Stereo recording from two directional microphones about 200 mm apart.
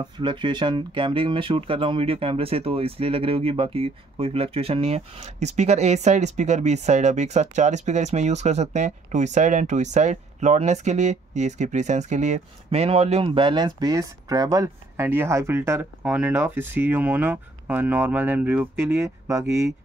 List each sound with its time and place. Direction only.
0.0 s speech: 25° right (ahead or behind)